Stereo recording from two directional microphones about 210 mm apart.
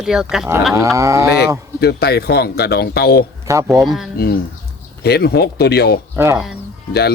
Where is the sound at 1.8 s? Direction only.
50° left (ahead or behind).